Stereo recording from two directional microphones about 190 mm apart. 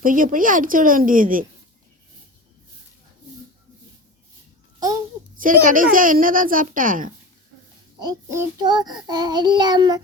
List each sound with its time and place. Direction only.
0.0 s a child's voice: 45° right (ahead or behind)
5.4 s a child's voice: 45° right (ahead or behind)
7.9 s child singing: 15° right (ahead or behind)